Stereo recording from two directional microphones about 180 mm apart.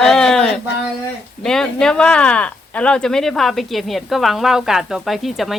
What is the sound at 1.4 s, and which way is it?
Speech, centre (ahead or behind).